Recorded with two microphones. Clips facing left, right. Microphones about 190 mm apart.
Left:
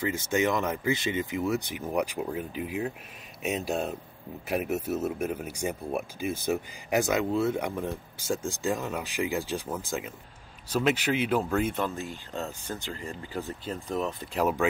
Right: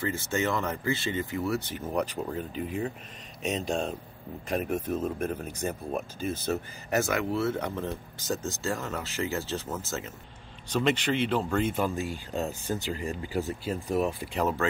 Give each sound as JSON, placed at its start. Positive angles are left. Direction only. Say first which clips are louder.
{"t": 0.0, "sound": "speech", "louder": "left 2 dB", "side_deg": 15}
{"t": 11.8, "sound": "speech", "louder": "right 2 dB", "side_deg": -15}
{"t": 14.3, "sound": "speech", "louder": "left 5 dB", "side_deg": 10}